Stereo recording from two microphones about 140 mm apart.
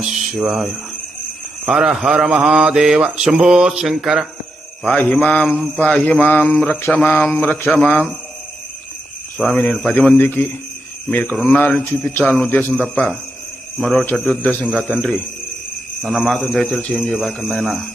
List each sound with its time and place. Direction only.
0.0 s speech: 5° right (ahead or behind)
1.6 s mantra: 5° right (ahead or behind)
4.8 s mantra: 5° left (ahead or behind)
7.4 s mantra: 15° left (ahead or behind)
9.4 s mantra: 10° left (ahead or behind)
16.0 s mantra: centre (ahead or behind)